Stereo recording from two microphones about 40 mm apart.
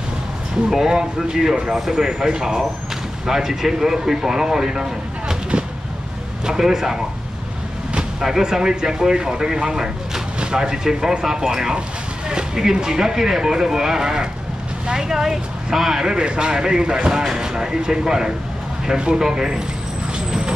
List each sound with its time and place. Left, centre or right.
0.7 s speech: centre
6.4 s speech: centre
8.2 s speech: centre
12.3 s a sound: centre
12.7 s speech: centre
20.2 s vehicle: centre